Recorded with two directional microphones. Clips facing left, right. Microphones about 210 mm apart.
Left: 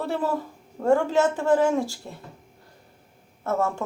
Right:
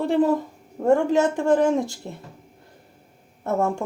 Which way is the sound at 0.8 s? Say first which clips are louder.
Right 2 dB; 15° right (ahead or behind).